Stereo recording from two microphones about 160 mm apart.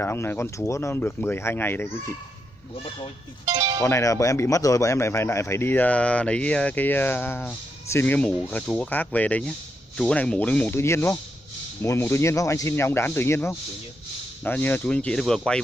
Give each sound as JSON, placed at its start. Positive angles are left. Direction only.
{"t": 0.0, "sound": "speech", "side_deg": 15}
{"t": 3.4, "sound": "speech", "side_deg": -30}
{"t": 3.8, "sound": "speech", "side_deg": 20}